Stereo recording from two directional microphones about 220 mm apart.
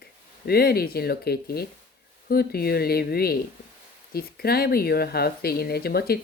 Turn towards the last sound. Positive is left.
turn(degrees=45)  # may be behind; listen again after turning